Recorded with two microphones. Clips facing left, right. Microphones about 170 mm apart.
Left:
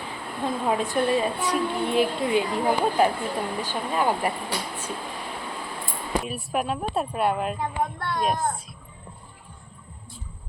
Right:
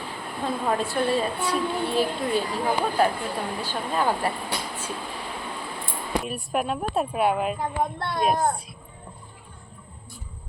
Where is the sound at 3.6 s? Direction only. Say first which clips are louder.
Even; 15° left (ahead or behind).